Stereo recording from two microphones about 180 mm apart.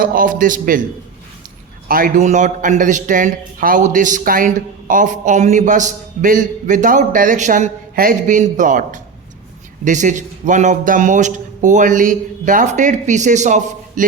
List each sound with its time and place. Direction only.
0.0 s a man's voice: 50° right (ahead or behind)
1.9 s a man's voice: 45° right (ahead or behind)